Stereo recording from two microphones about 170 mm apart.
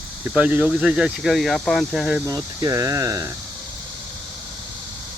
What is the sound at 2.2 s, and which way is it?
Speech, 20° right (ahead or behind).